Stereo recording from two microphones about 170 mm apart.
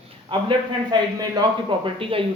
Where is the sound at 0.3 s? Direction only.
30° right (ahead or behind).